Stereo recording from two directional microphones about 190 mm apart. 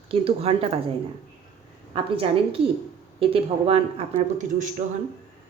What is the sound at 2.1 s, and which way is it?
Speech, 30° right (ahead or behind).